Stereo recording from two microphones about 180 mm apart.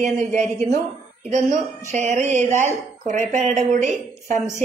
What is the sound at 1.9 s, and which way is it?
Speech, 40° right (ahead or behind).